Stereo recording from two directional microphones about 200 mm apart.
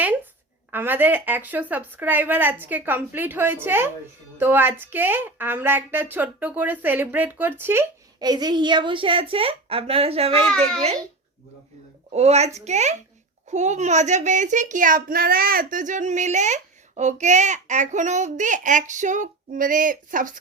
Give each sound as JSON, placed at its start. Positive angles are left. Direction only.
{"t": 0.7, "sound": "a woman's voice", "side_deg": -10}
{"t": 12.1, "sound": "a child's voice", "side_deg": -35}